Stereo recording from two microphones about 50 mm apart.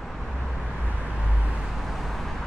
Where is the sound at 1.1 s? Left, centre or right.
Right.